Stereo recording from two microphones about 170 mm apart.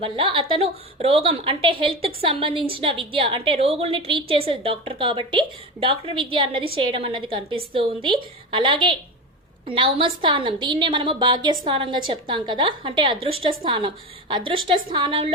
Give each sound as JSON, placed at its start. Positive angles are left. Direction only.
{"t": 0.0, "sound": "a woman's voice", "side_deg": -30}